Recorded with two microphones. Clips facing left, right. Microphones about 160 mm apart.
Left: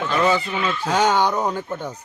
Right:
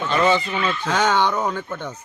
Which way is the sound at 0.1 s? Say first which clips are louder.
Right 1 dB; 5° left (ahead or behind).